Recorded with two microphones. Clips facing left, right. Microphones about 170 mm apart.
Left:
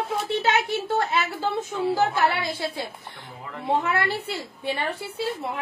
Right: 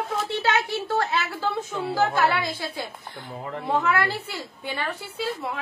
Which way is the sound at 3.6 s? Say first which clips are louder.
Even; 30° left (ahead or behind).